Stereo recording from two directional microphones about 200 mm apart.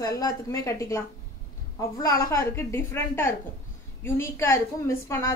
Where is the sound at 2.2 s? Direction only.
15° left (ahead or behind).